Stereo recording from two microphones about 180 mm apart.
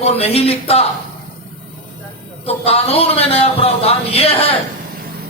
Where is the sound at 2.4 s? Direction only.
35° left (ahead or behind).